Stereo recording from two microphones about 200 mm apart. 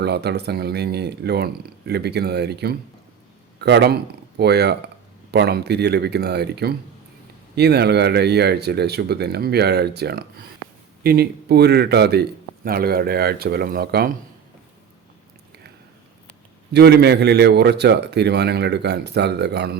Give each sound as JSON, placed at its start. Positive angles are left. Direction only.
{"t": 0.0, "sound": "a man's voice", "side_deg": -55}
{"t": 16.7, "sound": "a man's voice", "side_deg": -55}